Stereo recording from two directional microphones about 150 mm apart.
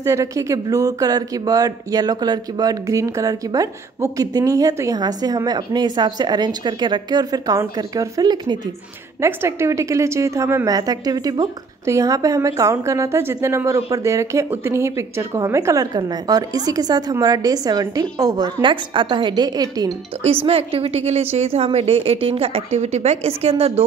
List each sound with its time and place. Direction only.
0.0 s speech: 20° right (ahead or behind)
20.4 s a woman's voice: 40° right (ahead or behind)